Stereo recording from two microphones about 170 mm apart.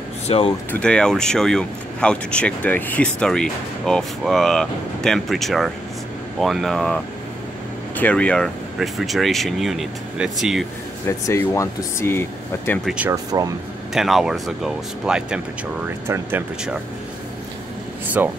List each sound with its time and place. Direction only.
0.3 s speech: 35° left (ahead or behind)
0.7 s speech: 5° left (ahead or behind)
8.0 s speech: 5° left (ahead or behind)
11.1 s speech: 15° left (ahead or behind)
12.8 s speech: 5° right (ahead or behind)
13.1 s speech: 20° right (ahead or behind)
13.9 s speech: centre (ahead or behind)
18.2 s speech: 10° right (ahead or behind)